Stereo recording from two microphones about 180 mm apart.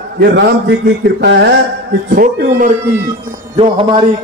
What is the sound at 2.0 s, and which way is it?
Speech, 55° right (ahead or behind).